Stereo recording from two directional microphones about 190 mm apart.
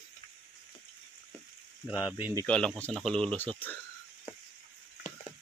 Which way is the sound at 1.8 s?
10° right (ahead or behind).